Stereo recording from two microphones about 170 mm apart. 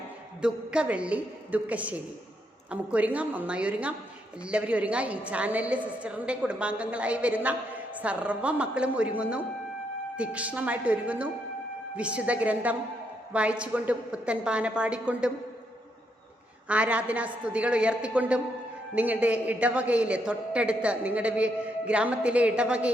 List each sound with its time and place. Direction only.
0.4 s a man's voice: 5° right (ahead or behind)
16.6 s a man's voice: 10° right (ahead or behind)